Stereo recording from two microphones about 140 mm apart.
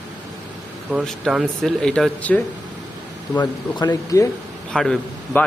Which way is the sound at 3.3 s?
30° left (ahead or behind).